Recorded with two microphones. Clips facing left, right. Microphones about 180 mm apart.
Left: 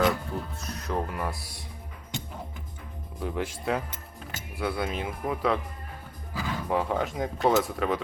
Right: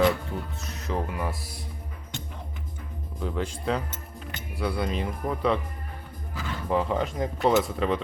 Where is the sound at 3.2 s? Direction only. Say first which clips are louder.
Right 1 dB; 5° left (ahead or behind).